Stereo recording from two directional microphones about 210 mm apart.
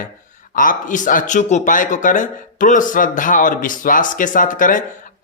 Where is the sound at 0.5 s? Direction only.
40° left (ahead or behind).